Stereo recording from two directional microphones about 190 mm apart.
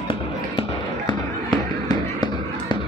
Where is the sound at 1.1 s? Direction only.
25° left (ahead or behind).